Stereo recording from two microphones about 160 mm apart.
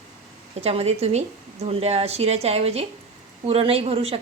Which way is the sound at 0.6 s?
40° right (ahead or behind).